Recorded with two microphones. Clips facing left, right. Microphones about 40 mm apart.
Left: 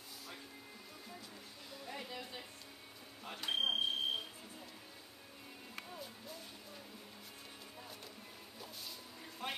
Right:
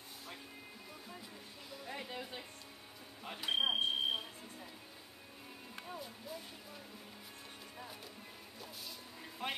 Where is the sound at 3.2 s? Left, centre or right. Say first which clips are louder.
Right 2 dB; centre.